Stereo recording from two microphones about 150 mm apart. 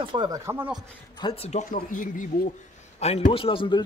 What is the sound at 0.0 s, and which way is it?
Speech, 30° right (ahead or behind).